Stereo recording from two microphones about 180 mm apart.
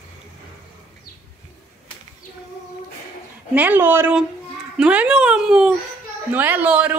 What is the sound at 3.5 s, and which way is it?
Speech, 10° right (ahead or behind).